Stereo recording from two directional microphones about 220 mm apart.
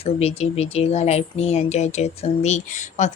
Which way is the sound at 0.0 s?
30° left (ahead or behind).